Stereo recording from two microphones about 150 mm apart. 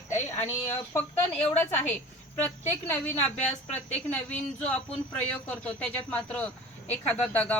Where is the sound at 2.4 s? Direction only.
15° left (ahead or behind).